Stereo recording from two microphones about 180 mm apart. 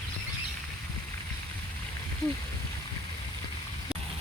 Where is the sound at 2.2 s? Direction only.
Centre (ahead or behind).